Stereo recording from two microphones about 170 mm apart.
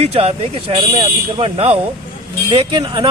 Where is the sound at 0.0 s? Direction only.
35° right (ahead or behind).